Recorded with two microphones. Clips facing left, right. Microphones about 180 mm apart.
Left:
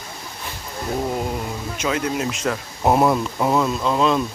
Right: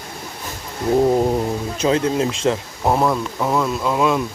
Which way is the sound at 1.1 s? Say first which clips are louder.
Right 8 dB; 35° right (ahead or behind).